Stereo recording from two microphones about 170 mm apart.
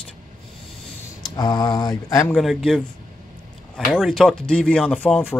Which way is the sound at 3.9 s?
Centre (ahead or behind).